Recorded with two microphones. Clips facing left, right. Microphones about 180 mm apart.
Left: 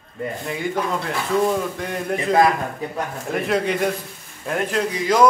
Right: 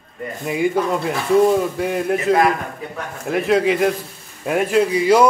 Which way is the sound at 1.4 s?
10° right (ahead or behind).